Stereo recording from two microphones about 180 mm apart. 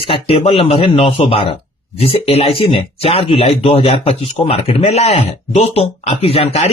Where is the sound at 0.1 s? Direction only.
35° left (ahead or behind).